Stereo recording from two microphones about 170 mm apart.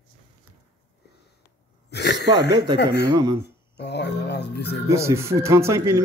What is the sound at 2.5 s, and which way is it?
Speech, 25° right (ahead or behind).